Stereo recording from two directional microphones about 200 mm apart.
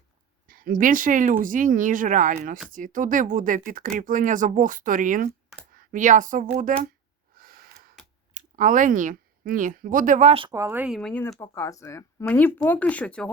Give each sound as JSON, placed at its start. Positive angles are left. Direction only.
{"t": 0.4, "sound": "speech", "side_deg": -45}
{"t": 7.3, "sound": "a sound", "side_deg": -45}
{"t": 8.3, "sound": "speech", "side_deg": -40}
{"t": 10.5, "sound": "speech", "side_deg": -10}